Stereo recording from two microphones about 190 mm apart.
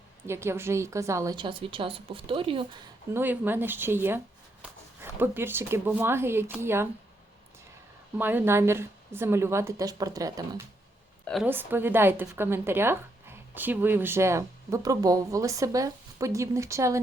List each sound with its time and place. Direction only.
0.3 s a woman's voice: 15° right (ahead or behind)
3.1 s speech: 10° right (ahead or behind)
8.2 s speech: 10° right (ahead or behind)